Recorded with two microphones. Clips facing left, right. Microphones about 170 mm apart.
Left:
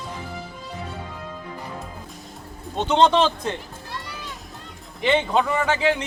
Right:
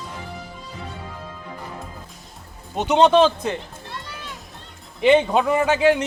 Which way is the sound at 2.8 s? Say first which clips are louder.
Right 3 dB; 10° right (ahead or behind).